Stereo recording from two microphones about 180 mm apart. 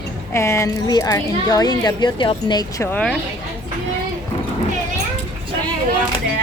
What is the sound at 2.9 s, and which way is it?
Speech, 5° left (ahead or behind).